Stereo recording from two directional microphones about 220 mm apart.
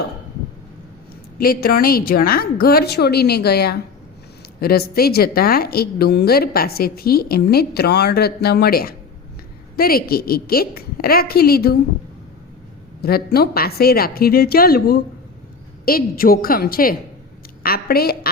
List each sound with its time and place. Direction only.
1.4 s a woman's voice: 40° left (ahead or behind)
13.0 s a woman's voice: 45° left (ahead or behind)